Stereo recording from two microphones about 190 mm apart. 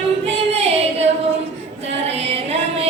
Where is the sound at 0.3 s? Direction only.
30° right (ahead or behind).